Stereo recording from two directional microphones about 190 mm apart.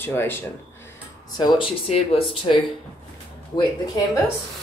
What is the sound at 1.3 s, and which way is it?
Speech, 25° left (ahead or behind).